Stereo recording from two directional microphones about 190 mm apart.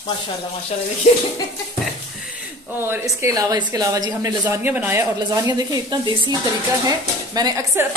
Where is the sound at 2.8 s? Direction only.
15° right (ahead or behind).